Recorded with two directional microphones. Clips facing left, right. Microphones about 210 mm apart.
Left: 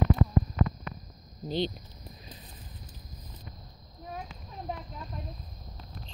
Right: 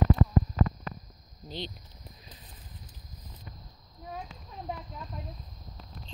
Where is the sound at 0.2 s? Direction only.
35° right (ahead or behind).